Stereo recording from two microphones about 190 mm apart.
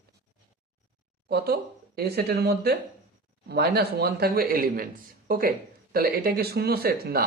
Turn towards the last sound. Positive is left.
turn(degrees=-55)  # may be behind; listen again after turning